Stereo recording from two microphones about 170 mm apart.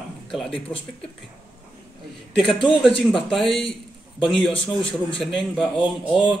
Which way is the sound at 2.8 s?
30° left (ahead or behind).